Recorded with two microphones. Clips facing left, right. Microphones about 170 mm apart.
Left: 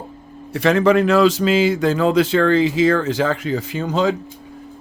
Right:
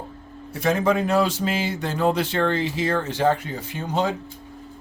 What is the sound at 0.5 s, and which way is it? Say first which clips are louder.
Speech: left 6 dB; 75° left (ahead or behind).